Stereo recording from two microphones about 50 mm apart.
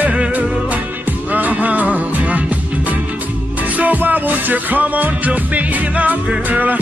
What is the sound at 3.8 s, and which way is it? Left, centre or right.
Music, right.